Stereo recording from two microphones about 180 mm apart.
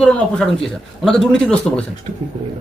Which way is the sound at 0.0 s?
5° left (ahead or behind).